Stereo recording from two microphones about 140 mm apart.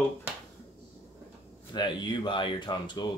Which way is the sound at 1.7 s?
35° left (ahead or behind).